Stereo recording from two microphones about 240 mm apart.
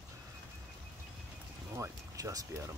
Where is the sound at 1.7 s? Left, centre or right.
Centre.